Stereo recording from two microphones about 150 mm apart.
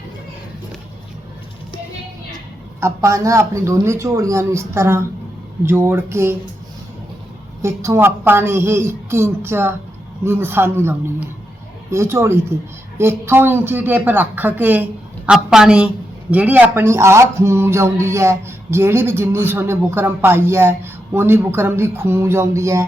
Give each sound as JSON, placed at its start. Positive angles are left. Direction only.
{"t": 2.8, "sound": "speech", "side_deg": -20}
{"t": 7.6, "sound": "a woman's voice", "side_deg": -20}